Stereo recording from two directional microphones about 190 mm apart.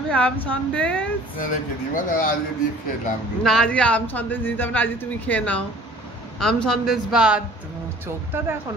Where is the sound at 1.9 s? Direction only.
45° left (ahead or behind).